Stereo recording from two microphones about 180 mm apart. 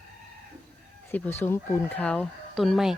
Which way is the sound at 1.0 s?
10° left (ahead or behind).